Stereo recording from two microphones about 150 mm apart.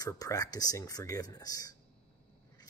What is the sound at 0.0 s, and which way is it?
Speech, 25° left (ahead or behind).